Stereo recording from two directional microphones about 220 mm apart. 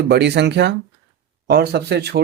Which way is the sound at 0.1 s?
50° right (ahead or behind).